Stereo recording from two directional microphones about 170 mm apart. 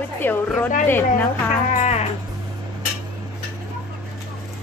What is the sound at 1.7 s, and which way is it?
Music, 40° left (ahead or behind).